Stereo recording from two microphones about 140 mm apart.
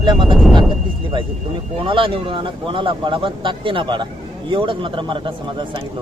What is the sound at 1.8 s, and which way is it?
Speech, 40° right (ahead or behind).